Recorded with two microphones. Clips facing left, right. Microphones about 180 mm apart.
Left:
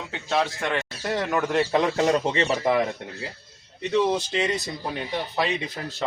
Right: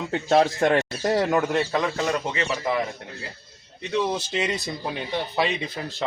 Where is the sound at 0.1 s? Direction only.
45° right (ahead or behind).